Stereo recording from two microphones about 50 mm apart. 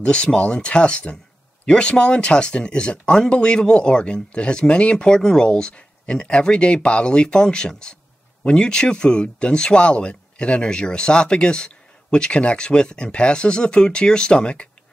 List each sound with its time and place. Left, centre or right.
0.0 s speech: left